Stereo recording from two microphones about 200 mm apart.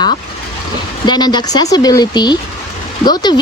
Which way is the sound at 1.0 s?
20° left (ahead or behind).